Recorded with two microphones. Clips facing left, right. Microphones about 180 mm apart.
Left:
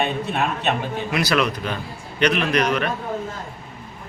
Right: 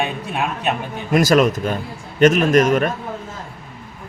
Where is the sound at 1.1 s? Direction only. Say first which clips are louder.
Right 8 dB; 45° right (ahead or behind).